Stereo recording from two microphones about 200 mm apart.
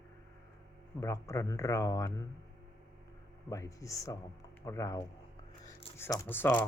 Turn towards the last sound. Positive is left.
turn(degrees=10)  # may be behind; listen again after turning